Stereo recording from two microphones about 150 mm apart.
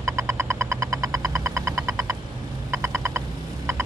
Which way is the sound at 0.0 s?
15° right (ahead or behind).